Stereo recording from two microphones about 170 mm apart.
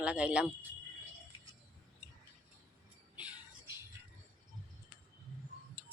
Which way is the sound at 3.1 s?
10° right (ahead or behind).